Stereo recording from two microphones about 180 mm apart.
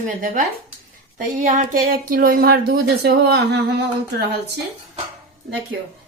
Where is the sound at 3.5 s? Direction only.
70° right (ahead or behind).